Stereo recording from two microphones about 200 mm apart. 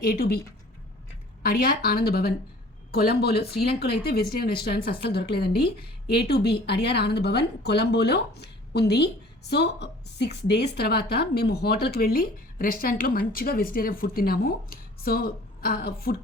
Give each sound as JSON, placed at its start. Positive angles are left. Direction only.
{"t": 0.0, "sound": "a woman's voice", "side_deg": 50}
{"t": 1.4, "sound": "a woman's voice", "side_deg": 50}